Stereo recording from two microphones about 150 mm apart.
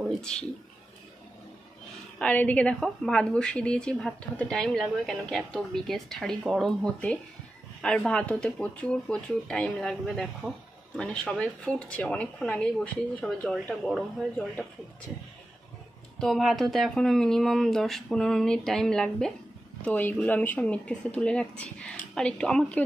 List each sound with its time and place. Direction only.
0.2 s a woman's voice: 5° left (ahead or behind)
2.1 s a woman's voice: 10° left (ahead or behind)
16.2 s a woman's voice: centre (ahead or behind)